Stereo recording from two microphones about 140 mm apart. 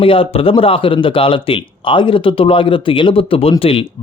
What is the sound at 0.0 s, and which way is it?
Speech, 40° left (ahead or behind).